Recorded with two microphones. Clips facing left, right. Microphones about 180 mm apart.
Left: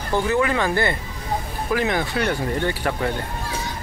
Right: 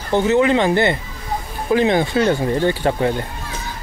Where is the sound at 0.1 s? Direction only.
25° right (ahead or behind).